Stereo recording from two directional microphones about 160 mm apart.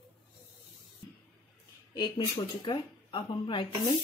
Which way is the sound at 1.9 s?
30° left (ahead or behind).